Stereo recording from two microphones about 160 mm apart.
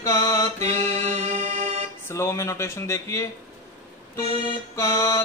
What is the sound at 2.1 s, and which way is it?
Speech, 15° left (ahead or behind).